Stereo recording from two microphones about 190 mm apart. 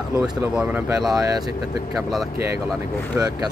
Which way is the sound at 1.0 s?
20° right (ahead or behind).